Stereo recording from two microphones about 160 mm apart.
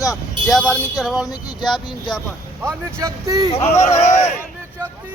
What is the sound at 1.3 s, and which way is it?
Speech, 25° left (ahead or behind).